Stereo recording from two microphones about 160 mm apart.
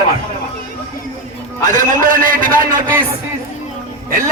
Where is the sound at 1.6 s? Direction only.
50° right (ahead or behind).